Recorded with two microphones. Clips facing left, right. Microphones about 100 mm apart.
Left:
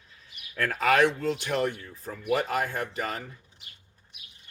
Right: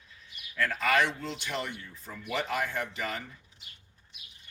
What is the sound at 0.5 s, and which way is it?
Speech, 50° left (ahead or behind).